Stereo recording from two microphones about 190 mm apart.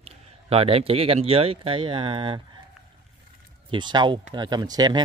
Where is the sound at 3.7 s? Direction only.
25° right (ahead or behind).